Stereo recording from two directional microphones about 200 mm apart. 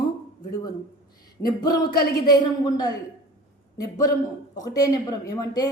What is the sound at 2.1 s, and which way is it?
A woman's voice, 20° left (ahead or behind).